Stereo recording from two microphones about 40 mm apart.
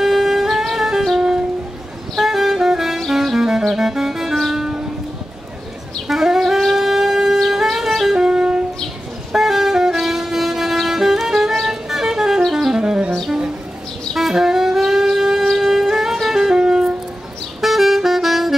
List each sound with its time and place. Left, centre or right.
0.0 s music: centre
2.1 s saxophone: centre
3.1 s music: centre
6.0 s wind instrument: centre
7.3 s music: centre
8.1 s music: centre
9.3 s vehicle: centre
10.9 s music: centre
14.1 s wind instrument: centre
15.5 s music: centre
17.6 s saxophone: centre